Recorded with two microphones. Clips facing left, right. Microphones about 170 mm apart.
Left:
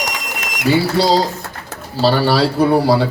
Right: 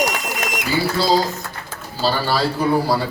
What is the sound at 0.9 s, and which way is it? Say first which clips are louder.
A man's voice: left 3 dB; 75° left (ahead or behind).